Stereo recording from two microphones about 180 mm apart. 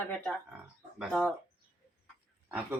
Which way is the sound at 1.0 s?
Centre (ahead or behind).